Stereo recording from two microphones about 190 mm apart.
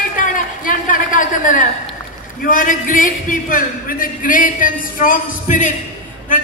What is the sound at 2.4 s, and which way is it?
A man's voice, 45° left (ahead or behind).